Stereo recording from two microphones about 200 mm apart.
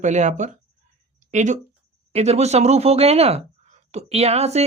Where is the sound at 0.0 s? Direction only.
35° right (ahead or behind).